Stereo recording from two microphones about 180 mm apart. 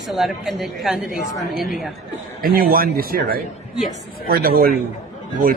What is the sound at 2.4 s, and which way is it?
Speech, 55° right (ahead or behind).